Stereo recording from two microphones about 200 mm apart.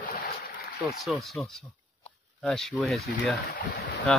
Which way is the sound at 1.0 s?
Centre (ahead or behind).